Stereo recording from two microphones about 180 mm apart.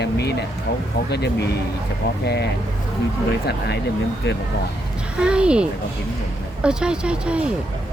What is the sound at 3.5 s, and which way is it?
Speech, 65° left (ahead or behind).